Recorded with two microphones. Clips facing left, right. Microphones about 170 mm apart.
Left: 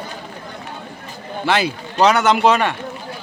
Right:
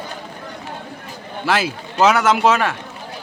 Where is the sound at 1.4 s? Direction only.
Centre (ahead or behind).